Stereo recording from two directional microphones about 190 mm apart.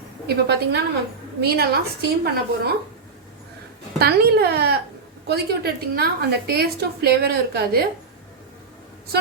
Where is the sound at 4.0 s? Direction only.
60° right (ahead or behind).